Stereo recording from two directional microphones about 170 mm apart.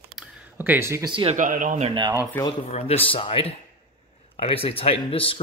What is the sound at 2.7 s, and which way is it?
Speech, 35° left (ahead or behind).